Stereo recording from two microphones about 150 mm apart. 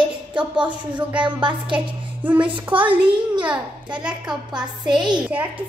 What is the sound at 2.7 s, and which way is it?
Speech, 35° right (ahead or behind).